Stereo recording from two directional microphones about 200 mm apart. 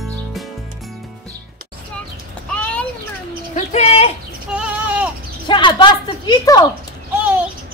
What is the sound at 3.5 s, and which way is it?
Bird, 30° left (ahead or behind).